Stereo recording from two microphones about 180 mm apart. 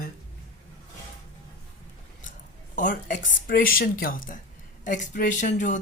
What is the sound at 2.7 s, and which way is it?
Speech, 45° left (ahead or behind).